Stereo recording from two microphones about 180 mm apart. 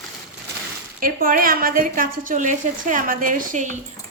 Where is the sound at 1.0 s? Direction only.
50° right (ahead or behind).